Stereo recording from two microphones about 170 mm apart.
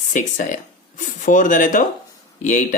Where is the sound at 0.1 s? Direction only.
50° left (ahead or behind).